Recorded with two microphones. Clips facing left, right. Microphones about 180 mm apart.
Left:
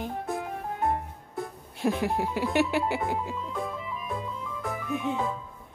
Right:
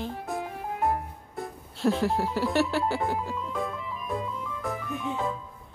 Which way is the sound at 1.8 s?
15° left (ahead or behind).